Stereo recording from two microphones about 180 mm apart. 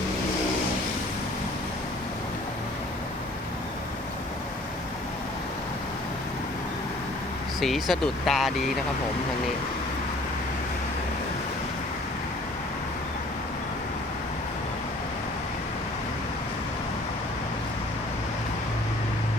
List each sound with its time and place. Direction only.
7.6 s speech: centre (ahead or behind)